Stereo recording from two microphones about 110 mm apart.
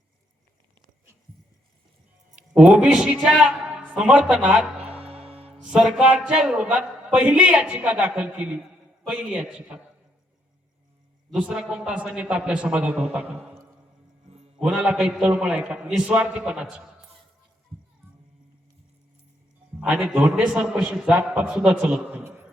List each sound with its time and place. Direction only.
2.6 s a man's voice: 10° right (ahead or behind)
4.8 s music: 65° right (ahead or behind)
5.6 s a man's voice: 10° right (ahead or behind)
11.3 s a man's voice: 10° right (ahead or behind)
13.3 s speech: 5° left (ahead or behind)
14.3 s music: 65° right (ahead or behind)
14.6 s a man's voice: 10° right (ahead or behind)
19.8 s a man's voice: 10° right (ahead or behind)